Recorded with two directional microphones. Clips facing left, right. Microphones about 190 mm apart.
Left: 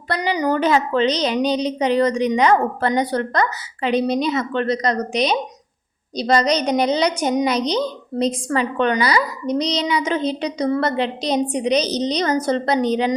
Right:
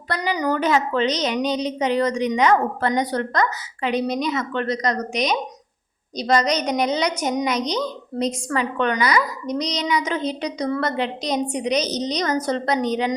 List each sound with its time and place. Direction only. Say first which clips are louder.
0.1 s a woman's voice: left 3 dB; 25° left (ahead or behind)